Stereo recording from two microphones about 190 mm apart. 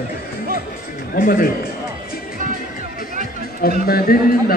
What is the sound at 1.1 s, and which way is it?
Speech, 50° left (ahead or behind).